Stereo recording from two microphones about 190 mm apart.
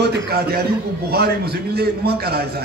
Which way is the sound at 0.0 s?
55° right (ahead or behind).